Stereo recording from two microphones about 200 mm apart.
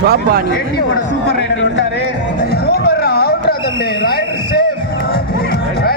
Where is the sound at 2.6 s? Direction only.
50° left (ahead or behind).